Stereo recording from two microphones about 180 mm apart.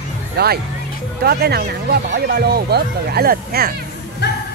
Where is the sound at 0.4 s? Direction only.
60° right (ahead or behind).